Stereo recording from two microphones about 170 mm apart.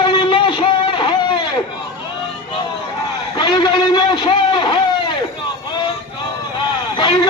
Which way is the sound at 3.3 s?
25° left (ahead or behind).